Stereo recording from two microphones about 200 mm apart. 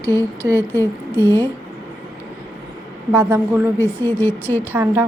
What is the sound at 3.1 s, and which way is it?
Speech, 15° right (ahead or behind).